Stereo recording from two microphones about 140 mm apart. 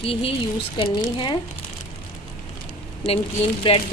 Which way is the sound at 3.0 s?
45° left (ahead or behind).